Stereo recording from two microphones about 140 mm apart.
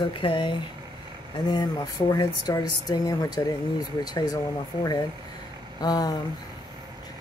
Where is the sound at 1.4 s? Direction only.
30° left (ahead or behind).